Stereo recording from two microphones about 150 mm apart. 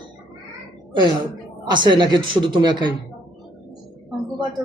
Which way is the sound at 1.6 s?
30° right (ahead or behind).